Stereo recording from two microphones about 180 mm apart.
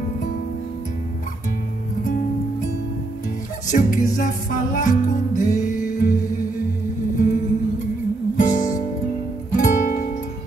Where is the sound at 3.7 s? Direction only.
50° left (ahead or behind).